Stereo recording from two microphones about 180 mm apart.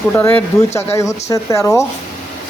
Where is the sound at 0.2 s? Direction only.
10° left (ahead or behind).